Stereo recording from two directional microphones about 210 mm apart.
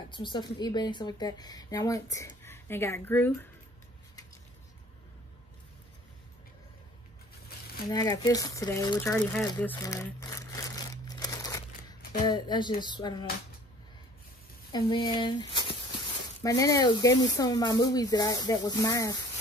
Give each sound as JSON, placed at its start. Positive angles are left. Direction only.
{"t": 0.1, "sound": "a woman's voice", "side_deg": 20}
{"t": 7.9, "sound": "speech", "side_deg": 20}
{"t": 9.6, "sound": "crumpling", "side_deg": 10}
{"t": 12.3, "sound": "a woman's voice", "side_deg": 20}
{"t": 14.7, "sound": "a woman's voice", "side_deg": 20}